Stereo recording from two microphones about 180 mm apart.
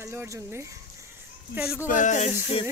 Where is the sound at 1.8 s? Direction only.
45° left (ahead or behind).